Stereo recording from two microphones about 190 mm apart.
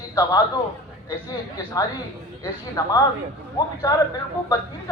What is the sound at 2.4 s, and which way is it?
Speech, 20° left (ahead or behind).